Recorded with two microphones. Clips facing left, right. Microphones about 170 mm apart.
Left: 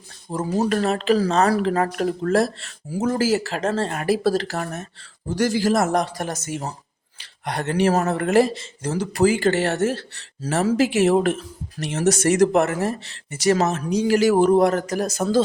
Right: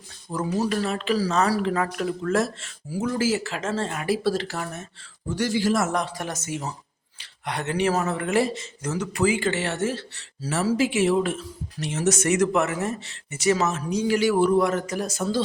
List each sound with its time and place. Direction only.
0.4 s speech: 45° left (ahead or behind)
10.4 s speech: 50° left (ahead or behind)
11.8 s speech: 55° left (ahead or behind)
12.0 s speech: 35° left (ahead or behind)
13.7 s speech: 65° left (ahead or behind)
14.1 s speech: 40° left (ahead or behind)